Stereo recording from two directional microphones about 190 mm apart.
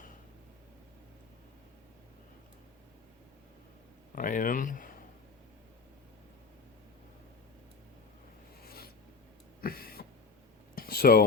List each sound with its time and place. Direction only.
4.1 s speech: 45° left (ahead or behind)
8.6 s filing: 55° left (ahead or behind)
9.6 s a sound: 50° left (ahead or behind)